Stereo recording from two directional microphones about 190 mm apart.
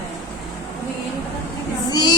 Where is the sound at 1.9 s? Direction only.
20° left (ahead or behind).